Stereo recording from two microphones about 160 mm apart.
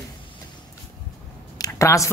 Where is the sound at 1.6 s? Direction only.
20° left (ahead or behind).